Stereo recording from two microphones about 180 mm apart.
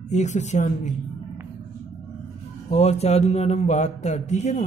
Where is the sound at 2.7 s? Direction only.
35° left (ahead or behind).